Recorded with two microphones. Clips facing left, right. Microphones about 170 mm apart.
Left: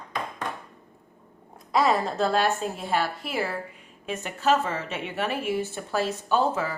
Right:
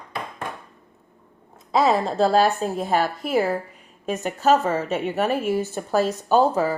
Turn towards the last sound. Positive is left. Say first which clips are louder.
# right 6 dB
turn(degrees=-40)  # may be behind; listen again after turning